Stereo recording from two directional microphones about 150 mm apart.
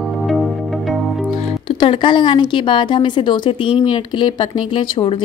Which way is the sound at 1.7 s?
35° left (ahead or behind).